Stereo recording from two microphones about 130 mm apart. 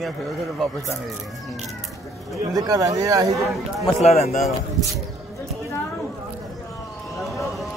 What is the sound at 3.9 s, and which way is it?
Speech, 55° left (ahead or behind).